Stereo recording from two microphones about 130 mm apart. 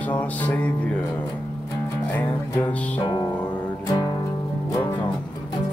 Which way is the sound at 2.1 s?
15° left (ahead or behind).